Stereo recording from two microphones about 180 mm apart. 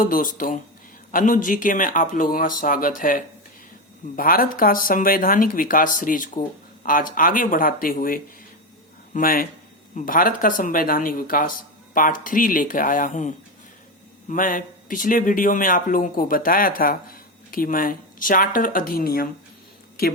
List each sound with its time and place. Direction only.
0.0 s speech: 50° left (ahead or behind)